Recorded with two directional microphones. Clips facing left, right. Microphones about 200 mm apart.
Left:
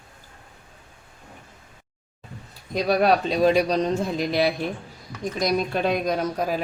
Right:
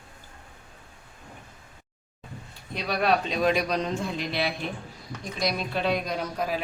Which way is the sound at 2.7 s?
40° left (ahead or behind).